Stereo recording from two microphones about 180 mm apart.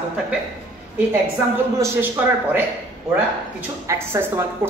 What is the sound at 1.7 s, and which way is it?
Speech, 15° right (ahead or behind).